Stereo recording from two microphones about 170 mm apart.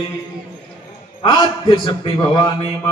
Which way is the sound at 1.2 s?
25° left (ahead or behind).